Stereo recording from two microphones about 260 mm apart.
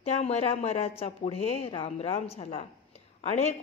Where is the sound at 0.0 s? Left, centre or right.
Left.